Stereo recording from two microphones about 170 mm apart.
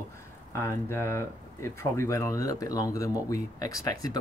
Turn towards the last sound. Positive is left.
turn(degrees=20)  # may be behind; listen again after turning